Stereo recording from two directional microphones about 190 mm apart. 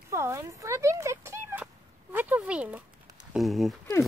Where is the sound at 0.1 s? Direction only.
15° right (ahead or behind).